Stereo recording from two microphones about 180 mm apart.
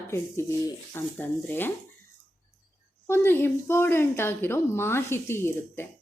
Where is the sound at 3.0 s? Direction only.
10° left (ahead or behind).